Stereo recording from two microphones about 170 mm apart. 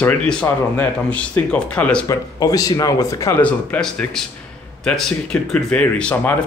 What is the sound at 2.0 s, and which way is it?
Speech, 20° left (ahead or behind).